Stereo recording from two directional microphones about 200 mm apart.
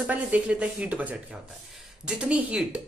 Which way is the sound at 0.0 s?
5° right (ahead or behind).